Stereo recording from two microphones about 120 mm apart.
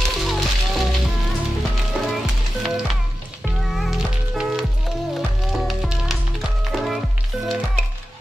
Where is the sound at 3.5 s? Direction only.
Centre (ahead or behind).